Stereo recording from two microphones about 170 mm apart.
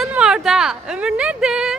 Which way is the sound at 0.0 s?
5° right (ahead or behind).